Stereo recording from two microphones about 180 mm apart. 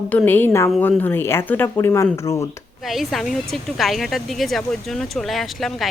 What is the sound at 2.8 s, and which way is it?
Speech, centre (ahead or behind).